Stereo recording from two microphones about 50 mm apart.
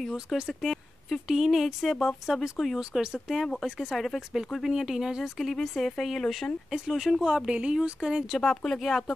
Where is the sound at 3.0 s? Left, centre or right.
Centre.